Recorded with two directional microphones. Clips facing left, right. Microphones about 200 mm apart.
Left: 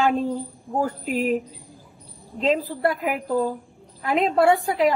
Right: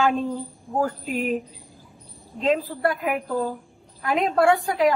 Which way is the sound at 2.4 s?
25° left (ahead or behind).